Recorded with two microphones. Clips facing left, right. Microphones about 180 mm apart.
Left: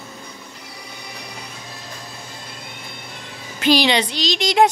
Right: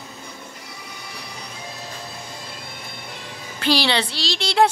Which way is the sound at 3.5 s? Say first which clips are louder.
Left 4 dB; 15° left (ahead or behind).